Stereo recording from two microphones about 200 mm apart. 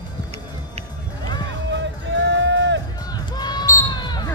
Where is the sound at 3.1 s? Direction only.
20° left (ahead or behind).